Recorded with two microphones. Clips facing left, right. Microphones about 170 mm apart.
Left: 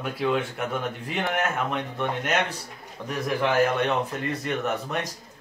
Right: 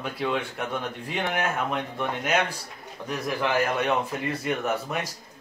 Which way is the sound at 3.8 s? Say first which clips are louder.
Even; 5° right (ahead or behind).